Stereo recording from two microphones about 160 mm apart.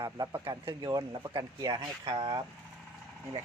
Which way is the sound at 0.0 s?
25° right (ahead or behind).